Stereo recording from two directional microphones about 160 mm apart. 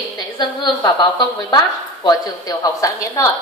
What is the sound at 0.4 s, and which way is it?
A woman's voice, 25° left (ahead or behind).